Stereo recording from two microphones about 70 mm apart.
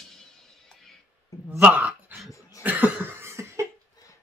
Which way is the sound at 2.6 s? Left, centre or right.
Right.